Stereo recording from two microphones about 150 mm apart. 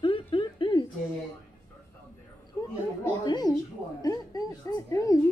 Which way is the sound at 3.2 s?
25° left (ahead or behind).